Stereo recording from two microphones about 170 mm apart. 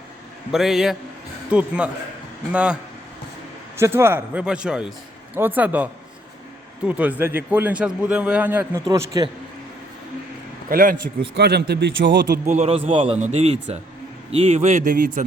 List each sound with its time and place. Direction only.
0.5 s a man's voice: centre (ahead or behind)
3.8 s a man's voice: 15° right (ahead or behind)
8.9 s a man's voice: 20° right (ahead or behind)
10.7 s a man's voice: 55° right (ahead or behind)
11.3 s speech: 75° right (ahead or behind)
12.5 s speech: 40° right (ahead or behind)